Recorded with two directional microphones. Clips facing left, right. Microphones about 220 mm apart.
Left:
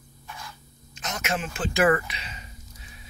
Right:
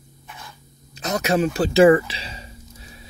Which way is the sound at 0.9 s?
35° right (ahead or behind).